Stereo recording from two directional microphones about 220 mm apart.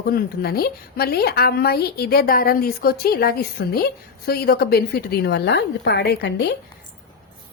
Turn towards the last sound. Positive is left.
turn(degrees=50)  # may be behind; listen again after turning